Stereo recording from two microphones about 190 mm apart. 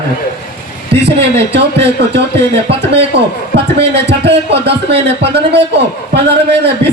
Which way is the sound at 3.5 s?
60° right (ahead or behind).